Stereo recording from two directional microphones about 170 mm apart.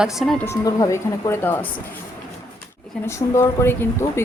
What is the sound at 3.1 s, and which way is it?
Speech, 15° left (ahead or behind).